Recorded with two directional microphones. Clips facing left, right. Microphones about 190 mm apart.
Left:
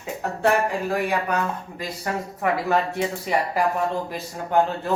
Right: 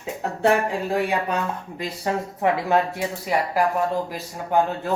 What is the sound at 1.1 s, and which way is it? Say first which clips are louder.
Speech: even; 20° right (ahead or behind).